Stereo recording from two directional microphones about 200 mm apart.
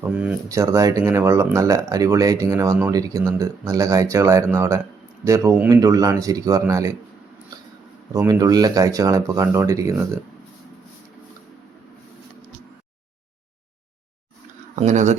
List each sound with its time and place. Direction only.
0.0 s speech: 5° right (ahead or behind)
8.1 s speech: 15° right (ahead or behind)
14.8 s speech: 35° right (ahead or behind)